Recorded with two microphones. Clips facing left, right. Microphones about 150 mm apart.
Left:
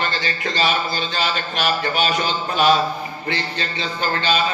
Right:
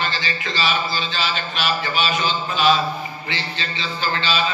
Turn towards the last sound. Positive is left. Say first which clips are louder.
# left 2 dB
turn(degrees=50)  # may be behind; listen again after turning